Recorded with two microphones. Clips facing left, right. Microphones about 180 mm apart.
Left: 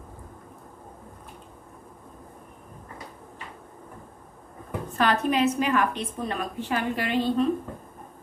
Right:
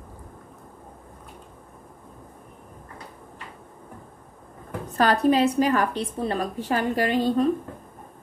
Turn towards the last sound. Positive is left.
turn(degrees=-40)  # may be behind; listen again after turning